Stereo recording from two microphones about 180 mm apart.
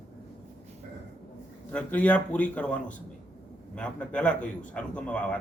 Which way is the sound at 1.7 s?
10° left (ahead or behind).